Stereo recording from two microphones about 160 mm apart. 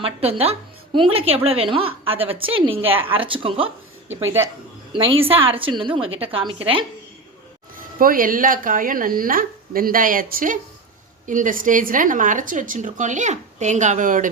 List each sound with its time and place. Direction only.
0.0 s a woman's voice: 40° right (ahead or behind)
4.9 s a woman's voice: 35° right (ahead or behind)
7.8 s a woman's voice: 60° right (ahead or behind)